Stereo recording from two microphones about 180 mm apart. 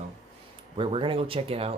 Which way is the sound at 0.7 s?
30° right (ahead or behind).